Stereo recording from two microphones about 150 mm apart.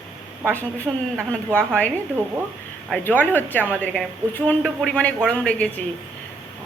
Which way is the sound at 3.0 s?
10° left (ahead or behind).